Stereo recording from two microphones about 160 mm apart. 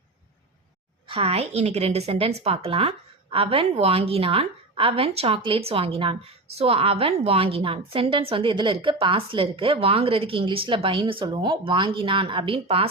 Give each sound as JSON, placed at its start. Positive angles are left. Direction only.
{"t": 1.0, "sound": "a woman's voice", "side_deg": -35}